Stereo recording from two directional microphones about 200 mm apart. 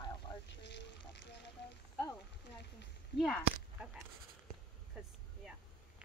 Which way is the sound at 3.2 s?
Centre (ahead or behind).